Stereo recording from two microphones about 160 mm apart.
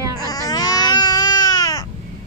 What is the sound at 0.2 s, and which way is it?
Baby cry, 25° left (ahead or behind).